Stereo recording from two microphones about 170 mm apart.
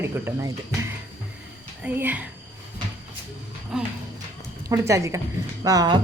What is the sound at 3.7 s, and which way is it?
Music, 5° right (ahead or behind).